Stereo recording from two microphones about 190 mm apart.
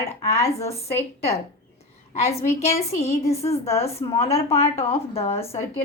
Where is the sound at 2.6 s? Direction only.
35° left (ahead or behind).